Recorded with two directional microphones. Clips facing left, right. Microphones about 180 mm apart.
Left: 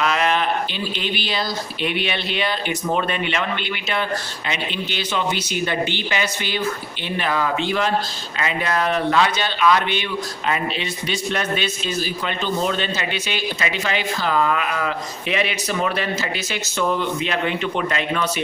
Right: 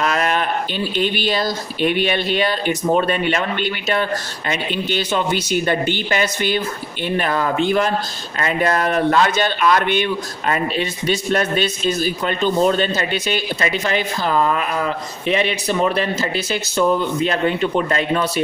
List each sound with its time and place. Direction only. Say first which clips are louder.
0.0 s a sound: right 1 dB; 45° right (ahead or behind)
0.9 s speech: right 8 dB; 45° right (ahead or behind)
4.5 s speech: right 5 dB; 45° right (ahead or behind)